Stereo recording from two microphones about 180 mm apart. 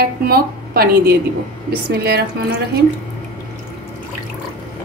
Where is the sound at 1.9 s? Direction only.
70° right (ahead or behind).